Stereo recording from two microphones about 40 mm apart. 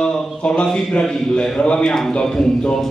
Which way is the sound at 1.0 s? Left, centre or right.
Left.